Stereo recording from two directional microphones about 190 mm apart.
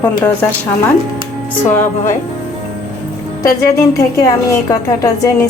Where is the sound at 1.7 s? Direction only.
10° left (ahead or behind).